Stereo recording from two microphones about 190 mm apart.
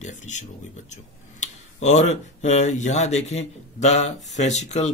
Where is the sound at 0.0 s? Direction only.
40° left (ahead or behind).